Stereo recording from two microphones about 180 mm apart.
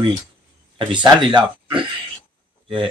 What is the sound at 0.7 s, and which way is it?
Speech, 25° right (ahead or behind).